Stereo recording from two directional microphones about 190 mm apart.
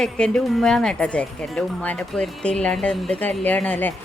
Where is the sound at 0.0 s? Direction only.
5° left (ahead or behind).